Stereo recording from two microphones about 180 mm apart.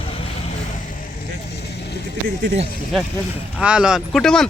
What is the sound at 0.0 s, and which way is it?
Vehicle, 30° left (ahead or behind).